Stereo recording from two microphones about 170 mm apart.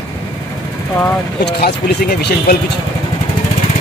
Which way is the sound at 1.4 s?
70° left (ahead or behind).